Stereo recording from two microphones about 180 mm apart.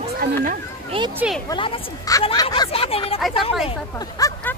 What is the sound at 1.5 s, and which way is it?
A child's voice, 25° left (ahead or behind).